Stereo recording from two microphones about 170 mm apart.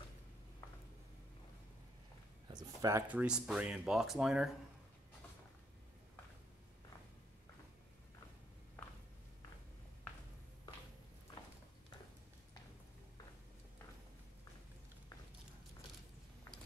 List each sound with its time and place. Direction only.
2.4 s speech: 20° right (ahead or behind)
3.1 s speech: 5° right (ahead or behind)